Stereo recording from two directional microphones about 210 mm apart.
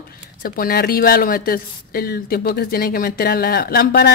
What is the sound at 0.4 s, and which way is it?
Speech, 45° left (ahead or behind).